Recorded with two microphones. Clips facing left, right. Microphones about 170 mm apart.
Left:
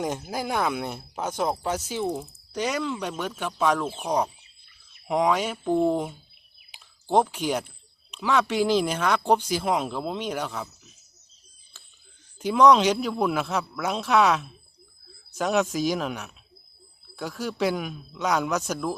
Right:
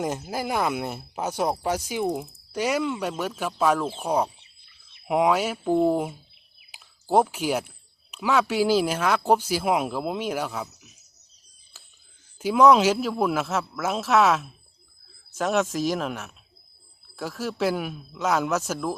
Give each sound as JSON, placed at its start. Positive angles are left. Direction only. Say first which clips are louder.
{"t": 0.0, "sound": "a man's voice", "louder": "right 1 dB", "side_deg": 0}
{"t": 6.7, "sound": "a sound", "louder": "right 2 dB", "side_deg": -5}
{"t": 8.1, "sound": "speech", "louder": "right 1 dB", "side_deg": -5}
{"t": 12.4, "sound": "a man's voice", "louder": "right 1 dB", "side_deg": -5}